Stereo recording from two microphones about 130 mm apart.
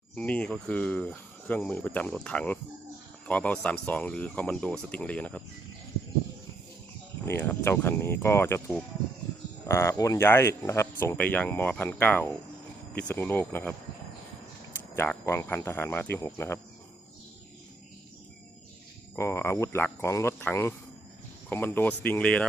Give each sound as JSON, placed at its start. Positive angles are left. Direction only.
{"t": 0.2, "sound": "speech", "side_deg": 10}
{"t": 7.3, "sound": "speech", "side_deg": 15}
{"t": 14.9, "sound": "speech", "side_deg": 15}
{"t": 19.1, "sound": "speech", "side_deg": 20}